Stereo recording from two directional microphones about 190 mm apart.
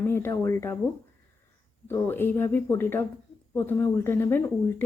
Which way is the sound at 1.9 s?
10° left (ahead or behind).